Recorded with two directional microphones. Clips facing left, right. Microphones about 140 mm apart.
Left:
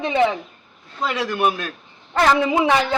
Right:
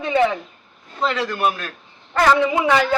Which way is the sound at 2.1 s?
20° left (ahead or behind).